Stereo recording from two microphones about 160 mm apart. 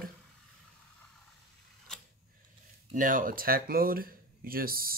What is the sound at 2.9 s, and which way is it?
Speech, 55° right (ahead or behind).